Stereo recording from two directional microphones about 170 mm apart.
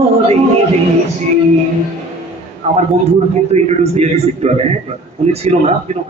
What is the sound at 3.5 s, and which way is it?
A man's voice, 40° right (ahead or behind).